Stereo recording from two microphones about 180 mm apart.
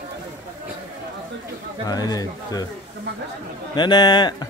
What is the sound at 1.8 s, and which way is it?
Speech, 20° left (ahead or behind).